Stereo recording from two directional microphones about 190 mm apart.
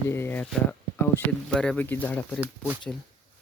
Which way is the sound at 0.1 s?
10° left (ahead or behind).